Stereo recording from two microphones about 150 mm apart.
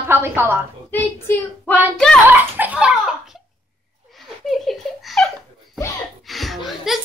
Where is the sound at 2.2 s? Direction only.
10° right (ahead or behind).